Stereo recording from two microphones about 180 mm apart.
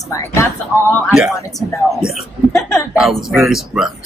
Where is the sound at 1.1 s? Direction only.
Centre (ahead or behind).